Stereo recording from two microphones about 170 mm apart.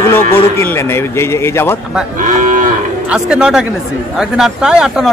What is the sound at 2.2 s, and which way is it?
Moo, 50° right (ahead or behind).